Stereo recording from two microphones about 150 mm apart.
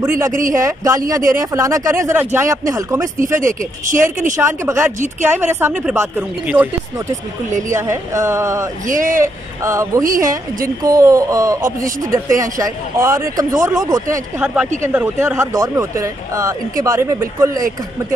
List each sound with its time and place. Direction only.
0.5 s speech: 20° right (ahead or behind)
3.3 s speech: 60° right (ahead or behind)
4.4 s speech: 20° right (ahead or behind)
8.8 s speech: 60° right (ahead or behind)
9.2 s speech: 20° right (ahead or behind)
10.0 s speech: 65° right (ahead or behind)
10.8 s speech: 20° right (ahead or behind)
14.4 s speech: 10° right (ahead or behind)